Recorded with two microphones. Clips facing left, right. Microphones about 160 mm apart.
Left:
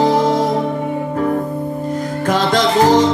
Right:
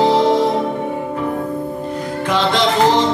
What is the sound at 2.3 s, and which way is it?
Music, 45° left (ahead or behind).